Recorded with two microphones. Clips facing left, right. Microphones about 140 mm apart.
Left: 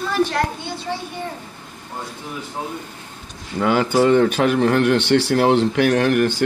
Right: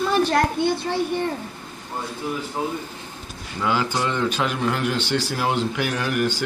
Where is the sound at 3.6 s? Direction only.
55° left (ahead or behind).